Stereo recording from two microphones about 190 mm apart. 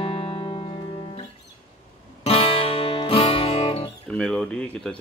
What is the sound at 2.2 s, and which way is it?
Music, 30° left (ahead or behind).